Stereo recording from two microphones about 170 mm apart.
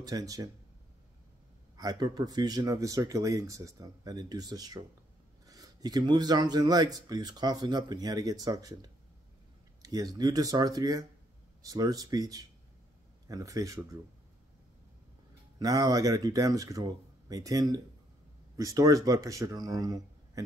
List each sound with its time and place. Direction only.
0.0 s speech: 20° right (ahead or behind)
1.8 s speech: 25° right (ahead or behind)
15.6 s speech: 20° right (ahead or behind)